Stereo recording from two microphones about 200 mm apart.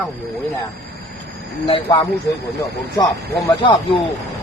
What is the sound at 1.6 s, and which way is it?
Speech, 25° left (ahead or behind).